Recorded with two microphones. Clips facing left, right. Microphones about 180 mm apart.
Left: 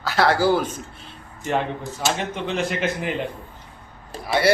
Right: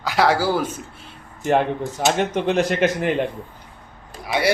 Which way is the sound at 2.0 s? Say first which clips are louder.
Right 6 dB; 55° right (ahead or behind).